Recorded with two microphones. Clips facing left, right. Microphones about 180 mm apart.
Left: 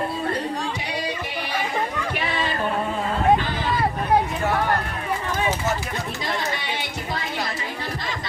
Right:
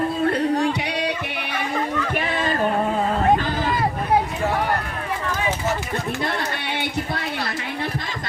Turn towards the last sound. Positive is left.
turn(degrees=-60)  # may be behind; listen again after turning